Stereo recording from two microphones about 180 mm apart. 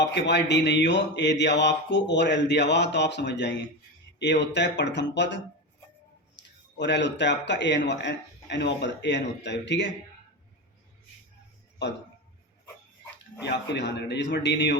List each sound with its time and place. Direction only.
0.0 s mantra: 70° left (ahead or behind)
13.4 s mantra: 70° left (ahead or behind)